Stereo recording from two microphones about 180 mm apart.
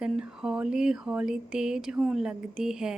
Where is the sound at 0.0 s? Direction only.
5° right (ahead or behind).